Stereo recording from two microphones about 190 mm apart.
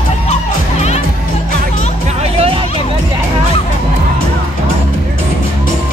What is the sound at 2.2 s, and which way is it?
Music, 30° right (ahead or behind).